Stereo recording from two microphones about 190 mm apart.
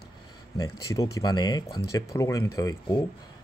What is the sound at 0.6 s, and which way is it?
Speech, 20° left (ahead or behind).